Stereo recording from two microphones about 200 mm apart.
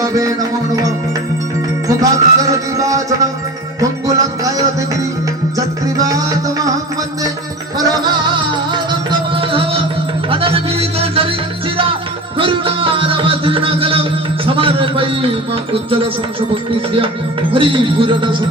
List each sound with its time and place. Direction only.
0.0 s music: 15° right (ahead or behind)
1.9 s music: 15° right (ahead or behind)
7.8 s music: 20° right (ahead or behind)
12.4 s music: 25° right (ahead or behind)
17.5 s music: 25° right (ahead or behind)